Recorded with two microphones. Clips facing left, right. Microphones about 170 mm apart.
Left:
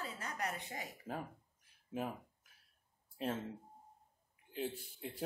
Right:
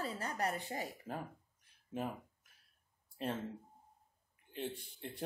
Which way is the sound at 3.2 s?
Centre (ahead or behind).